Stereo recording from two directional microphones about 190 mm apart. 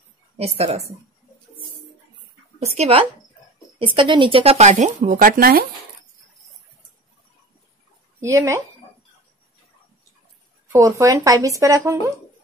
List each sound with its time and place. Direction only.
0.6 s speech: 35° right (ahead or behind)
2.6 s speech: 35° right (ahead or behind); by 5.7 s 50° right (ahead or behind)
8.2 s speech: 15° right (ahead or behind)
10.7 s speech: 15° right (ahead or behind)